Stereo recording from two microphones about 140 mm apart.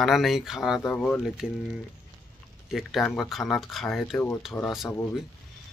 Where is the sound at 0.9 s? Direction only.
10° left (ahead or behind).